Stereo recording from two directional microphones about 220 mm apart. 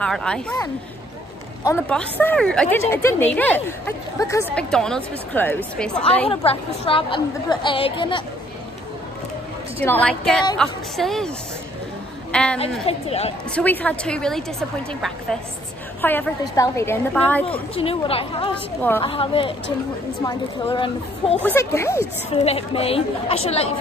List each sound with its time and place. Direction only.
0.0 s a woman's voice: 5° left (ahead or behind)
1.9 s a woman's voice: 5° left (ahead or behind)
6.2 s a woman's voice: 25° left (ahead or behind)
9.8 s a woman's voice: 10° left (ahead or behind)
12.8 s a woman's voice: 30° left (ahead or behind)
13.6 s a woman's voice: 5° left (ahead or behind)
17.7 s a woman's voice: 25° left (ahead or behind)
18.8 s speech: 10° left (ahead or behind)
19.0 s a woman's voice: 25° left (ahead or behind)
21.5 s speech: 10° left (ahead or behind)
22.3 s a woman's voice: 25° left (ahead or behind)